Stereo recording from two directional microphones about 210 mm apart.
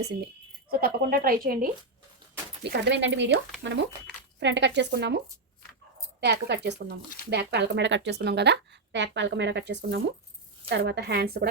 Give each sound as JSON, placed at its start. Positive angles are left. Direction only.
{"t": 0.7, "sound": "a woman's voice", "side_deg": -45}
{"t": 2.6, "sound": "a woman's voice", "side_deg": -55}